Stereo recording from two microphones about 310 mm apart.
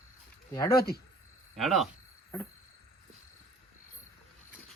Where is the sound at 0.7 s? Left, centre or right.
Left.